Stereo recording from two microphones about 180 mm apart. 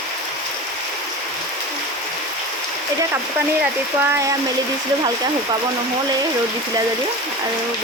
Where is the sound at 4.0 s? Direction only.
15° right (ahead or behind).